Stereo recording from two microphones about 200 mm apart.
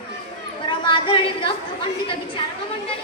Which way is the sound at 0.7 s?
25° left (ahead or behind).